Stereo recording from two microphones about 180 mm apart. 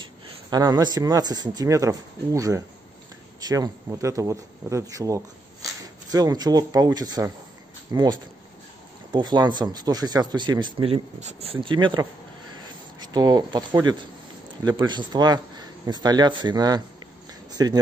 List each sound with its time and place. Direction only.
0.0 s speech: 20° right (ahead or behind)
12.6 s a sound: 25° right (ahead or behind)
14.6 s speech: 25° right (ahead or behind)